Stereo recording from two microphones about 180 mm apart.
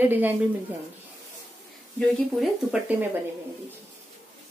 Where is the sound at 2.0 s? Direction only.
5° right (ahead or behind).